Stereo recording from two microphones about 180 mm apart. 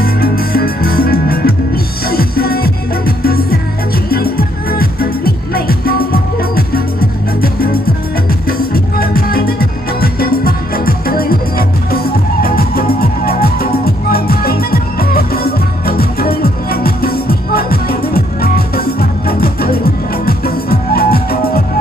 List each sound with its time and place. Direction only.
0.0 s music: 55° left (ahead or behind)
8.5 s music: 55° left (ahead or behind)